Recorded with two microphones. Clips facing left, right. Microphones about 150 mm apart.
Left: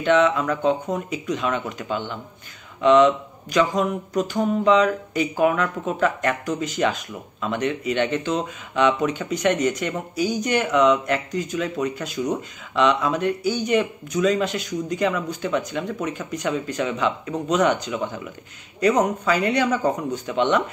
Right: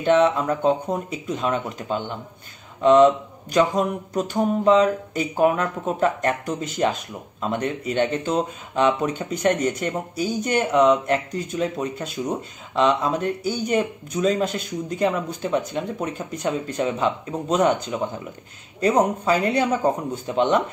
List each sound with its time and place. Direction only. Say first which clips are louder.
0.0 s speech: right 1 dB; 35° right (ahead or behind)